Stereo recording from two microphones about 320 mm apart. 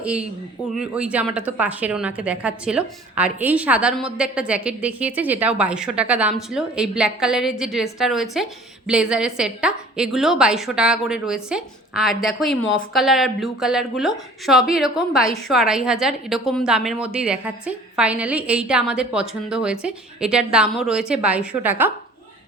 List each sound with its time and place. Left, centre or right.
0.0 s a woman's voice: centre